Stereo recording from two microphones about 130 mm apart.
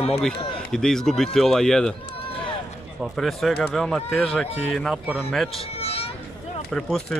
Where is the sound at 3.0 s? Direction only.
Centre (ahead or behind).